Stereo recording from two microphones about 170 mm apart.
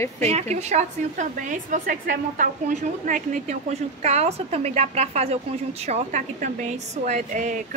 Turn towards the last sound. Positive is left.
turn(degrees=-45)  # may be behind; listen again after turning